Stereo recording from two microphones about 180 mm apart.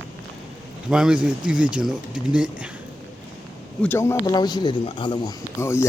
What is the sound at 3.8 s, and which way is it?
Speech, 10° left (ahead or behind).